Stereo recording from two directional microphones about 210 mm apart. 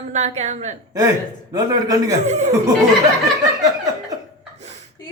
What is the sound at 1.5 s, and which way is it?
Speech, 20° right (ahead or behind).